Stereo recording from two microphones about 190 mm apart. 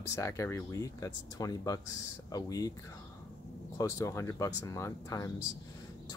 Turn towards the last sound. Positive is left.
turn(degrees=15)  # may be behind; listen again after turning